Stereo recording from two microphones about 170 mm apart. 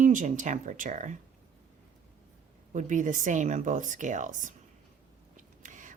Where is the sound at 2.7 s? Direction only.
45° right (ahead or behind).